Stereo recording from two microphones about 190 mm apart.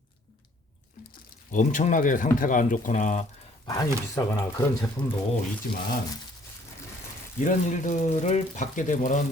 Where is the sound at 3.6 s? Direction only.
20° left (ahead or behind).